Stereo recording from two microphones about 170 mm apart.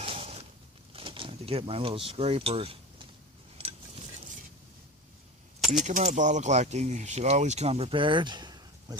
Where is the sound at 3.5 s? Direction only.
35° right (ahead or behind).